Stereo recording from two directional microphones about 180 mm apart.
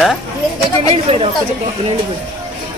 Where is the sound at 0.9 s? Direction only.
35° right (ahead or behind).